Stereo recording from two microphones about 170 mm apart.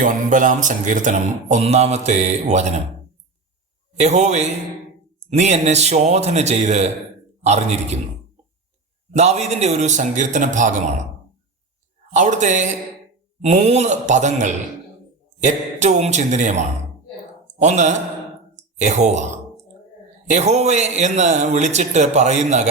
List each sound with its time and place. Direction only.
0.0 s speech: 50° right (ahead or behind)
3.9 s a man's voice: 40° right (ahead or behind)
9.1 s speech: 40° right (ahead or behind)
12.1 s speech: 45° right (ahead or behind)
20.3 s speech: 40° right (ahead or behind)